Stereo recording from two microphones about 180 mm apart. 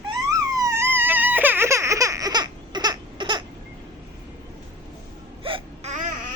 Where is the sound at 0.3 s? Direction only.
20° right (ahead or behind).